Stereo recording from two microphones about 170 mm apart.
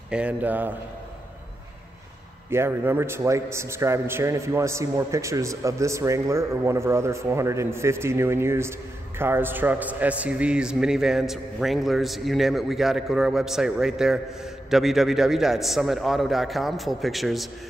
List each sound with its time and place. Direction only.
0.1 s a man's voice: 10° right (ahead or behind)
2.5 s a man's voice: 15° right (ahead or behind)